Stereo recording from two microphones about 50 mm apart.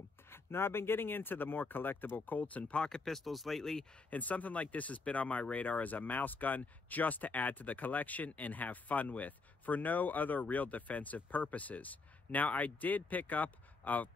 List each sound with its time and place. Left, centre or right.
0.3 s speech: left
3.1 s speech: centre
4.1 s speech: left